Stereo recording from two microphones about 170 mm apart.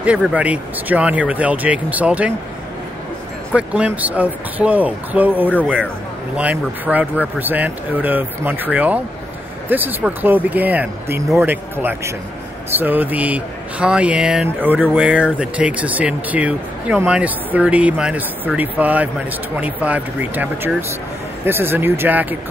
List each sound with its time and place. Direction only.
0.0 s speech: 5° right (ahead or behind)
3.5 s speech: 10° right (ahead or behind)